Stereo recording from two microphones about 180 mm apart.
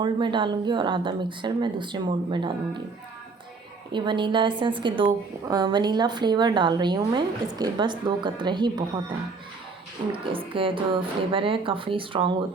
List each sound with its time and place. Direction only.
0.0 s a woman's voice: 25° right (ahead or behind)
3.9 s a woman's voice: 25° right (ahead or behind)
10.1 s a woman's voice: 30° right (ahead or behind)